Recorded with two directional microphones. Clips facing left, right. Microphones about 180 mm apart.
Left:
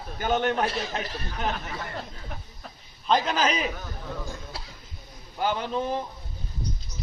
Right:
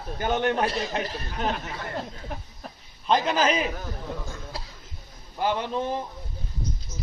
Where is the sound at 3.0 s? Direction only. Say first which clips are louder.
Right 1 dB; 10° right (ahead or behind).